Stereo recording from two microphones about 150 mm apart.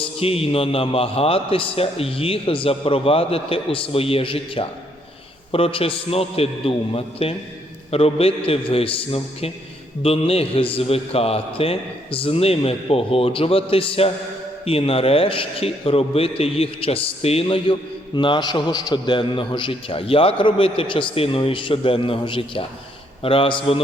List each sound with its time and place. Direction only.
0.0 s a man's voice: 40° left (ahead or behind)